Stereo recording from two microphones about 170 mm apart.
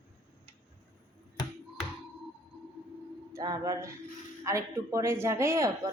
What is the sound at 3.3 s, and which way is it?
Music, 20° right (ahead or behind).